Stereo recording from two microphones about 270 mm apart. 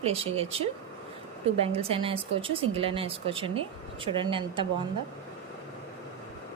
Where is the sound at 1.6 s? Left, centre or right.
Right.